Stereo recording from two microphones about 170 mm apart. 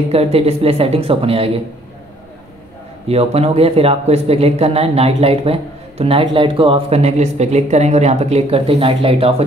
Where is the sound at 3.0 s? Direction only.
35° right (ahead or behind).